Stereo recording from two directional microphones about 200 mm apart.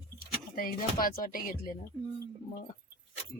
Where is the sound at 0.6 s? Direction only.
45° left (ahead or behind).